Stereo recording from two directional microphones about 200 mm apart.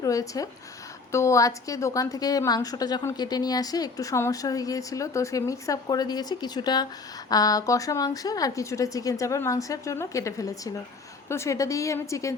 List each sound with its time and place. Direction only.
0.0 s a woman's voice: 15° left (ahead or behind)